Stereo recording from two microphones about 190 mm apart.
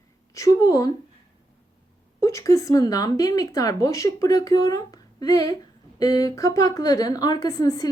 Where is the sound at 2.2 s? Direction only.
15° left (ahead or behind).